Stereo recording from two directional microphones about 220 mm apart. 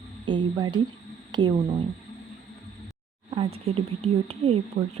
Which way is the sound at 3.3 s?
25° right (ahead or behind).